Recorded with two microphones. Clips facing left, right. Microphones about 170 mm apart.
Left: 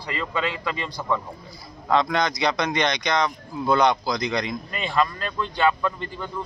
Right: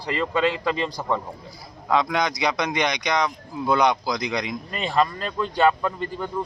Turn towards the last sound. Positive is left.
turn(degrees=-35)  # may be behind; listen again after turning